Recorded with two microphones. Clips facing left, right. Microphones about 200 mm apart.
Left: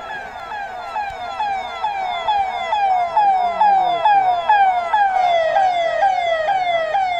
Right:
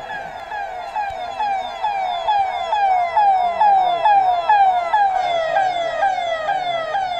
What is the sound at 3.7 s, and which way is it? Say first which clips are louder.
Emergency vehicle: right 1 dB; 15° left (ahead or behind).